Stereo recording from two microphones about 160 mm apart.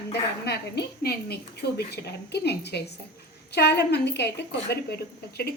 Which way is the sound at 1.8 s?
90° left.